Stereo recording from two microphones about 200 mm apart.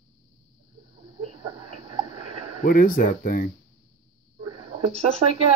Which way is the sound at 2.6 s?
45° left (ahead or behind).